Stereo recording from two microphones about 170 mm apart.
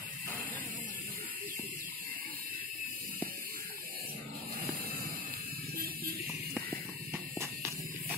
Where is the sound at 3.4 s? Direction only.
55° right (ahead or behind).